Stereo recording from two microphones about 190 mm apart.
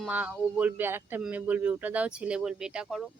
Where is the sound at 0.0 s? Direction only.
5° right (ahead or behind).